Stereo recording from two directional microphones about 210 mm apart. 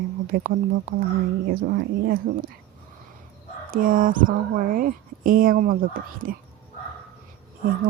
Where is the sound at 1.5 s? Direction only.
50° right (ahead or behind).